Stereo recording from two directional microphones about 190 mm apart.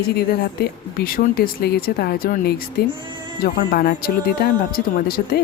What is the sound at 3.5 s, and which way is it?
Speech, 55° left (ahead or behind).